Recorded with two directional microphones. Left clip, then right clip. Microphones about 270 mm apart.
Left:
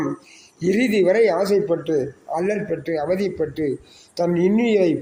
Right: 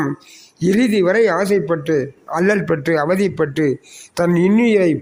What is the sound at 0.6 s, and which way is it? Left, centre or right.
A man's voice, right.